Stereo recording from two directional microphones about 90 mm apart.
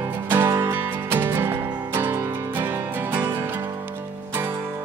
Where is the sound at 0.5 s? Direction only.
30° right (ahead or behind).